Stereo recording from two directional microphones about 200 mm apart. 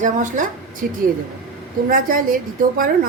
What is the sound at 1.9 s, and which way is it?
Speech, 45° right (ahead or behind).